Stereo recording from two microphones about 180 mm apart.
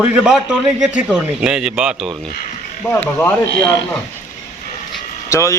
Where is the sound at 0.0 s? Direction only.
5° right (ahead or behind).